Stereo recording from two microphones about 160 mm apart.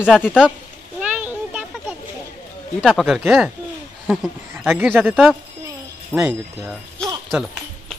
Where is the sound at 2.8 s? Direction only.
Centre (ahead or behind).